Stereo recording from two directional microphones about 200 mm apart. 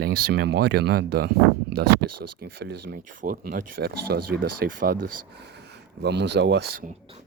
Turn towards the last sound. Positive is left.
turn(degrees=-60)  # may be behind; listen again after turning